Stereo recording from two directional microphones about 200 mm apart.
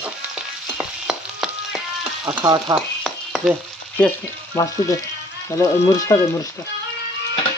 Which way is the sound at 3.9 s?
10° left (ahead or behind).